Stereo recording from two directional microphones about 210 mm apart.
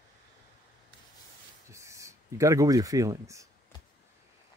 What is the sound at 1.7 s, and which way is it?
Speech, 15° right (ahead or behind).